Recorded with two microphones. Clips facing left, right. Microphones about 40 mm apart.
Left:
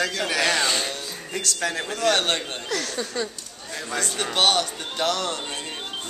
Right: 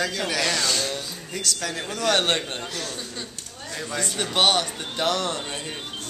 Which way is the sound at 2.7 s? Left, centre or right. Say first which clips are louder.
Left 5 dB; left.